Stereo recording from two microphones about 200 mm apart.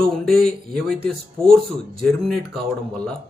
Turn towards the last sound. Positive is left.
turn(degrees=5)  # may be behind; listen again after turning